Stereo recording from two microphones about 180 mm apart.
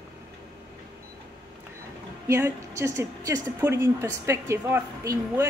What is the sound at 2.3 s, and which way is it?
Speech, 15° right (ahead or behind).